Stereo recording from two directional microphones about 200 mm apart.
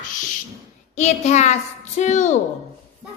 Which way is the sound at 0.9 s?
35° left (ahead or behind).